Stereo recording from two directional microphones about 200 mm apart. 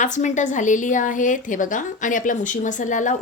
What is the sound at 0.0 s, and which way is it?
A woman's voice, 40° left (ahead or behind).